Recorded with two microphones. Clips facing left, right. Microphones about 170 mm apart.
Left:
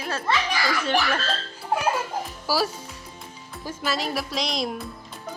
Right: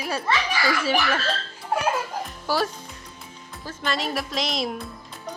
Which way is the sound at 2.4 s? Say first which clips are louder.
Even; 5° left (ahead or behind).